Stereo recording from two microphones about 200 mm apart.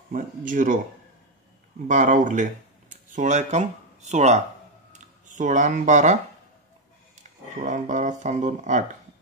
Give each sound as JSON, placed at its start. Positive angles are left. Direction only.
{"t": 0.1, "sound": "speech", "side_deg": -40}
{"t": 1.9, "sound": "speech", "side_deg": -40}
{"t": 7.6, "sound": "speech", "side_deg": -40}